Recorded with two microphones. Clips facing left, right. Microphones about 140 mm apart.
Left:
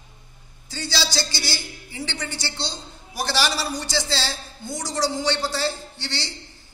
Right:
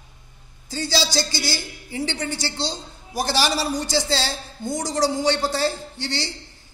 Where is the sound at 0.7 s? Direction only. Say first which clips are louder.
Right 4 dB; 45° right (ahead or behind).